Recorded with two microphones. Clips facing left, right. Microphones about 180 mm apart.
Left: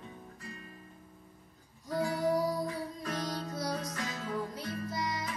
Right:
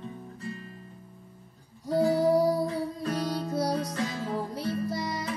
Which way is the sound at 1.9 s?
30° right (ahead or behind).